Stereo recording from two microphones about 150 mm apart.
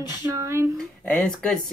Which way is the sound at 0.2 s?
20° right (ahead or behind).